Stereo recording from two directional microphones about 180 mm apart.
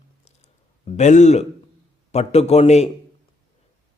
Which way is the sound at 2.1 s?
35° left (ahead or behind).